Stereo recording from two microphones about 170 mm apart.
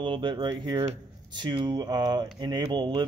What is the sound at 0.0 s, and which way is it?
A man's voice, 30° right (ahead or behind).